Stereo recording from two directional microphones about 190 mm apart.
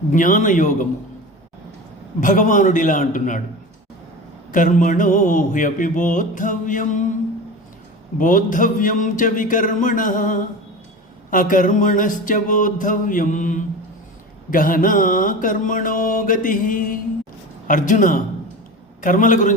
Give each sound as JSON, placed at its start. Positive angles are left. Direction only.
{"t": 0.1, "sound": "mantra", "side_deg": 45}
{"t": 2.2, "sound": "mantra", "side_deg": 45}
{"t": 4.5, "sound": "mantra", "side_deg": 45}
{"t": 8.2, "sound": "mantra", "side_deg": 45}